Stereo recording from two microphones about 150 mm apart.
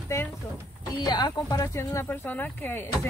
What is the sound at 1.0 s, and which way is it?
Speech, 25° left (ahead or behind).